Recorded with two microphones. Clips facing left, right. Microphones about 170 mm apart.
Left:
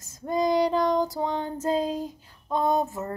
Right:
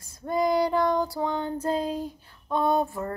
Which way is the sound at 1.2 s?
35° left (ahead or behind).